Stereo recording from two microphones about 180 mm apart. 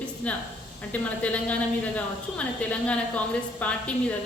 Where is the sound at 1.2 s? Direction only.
5° left (ahead or behind).